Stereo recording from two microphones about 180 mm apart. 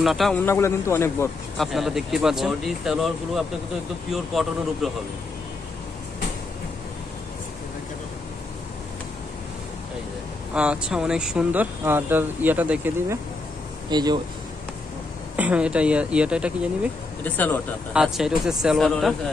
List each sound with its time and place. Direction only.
0.0 s speech: centre (ahead or behind)
0.5 s a man's voice: 15° left (ahead or behind)
1.6 s speech: centre (ahead or behind)
10.5 s speech: 5° right (ahead or behind)
13.8 s speech: 25° right (ahead or behind)
15.3 s speech: 5° right (ahead or behind)
17.2 s a man's voice: 10° left (ahead or behind)
17.9 s speech: centre (ahead or behind)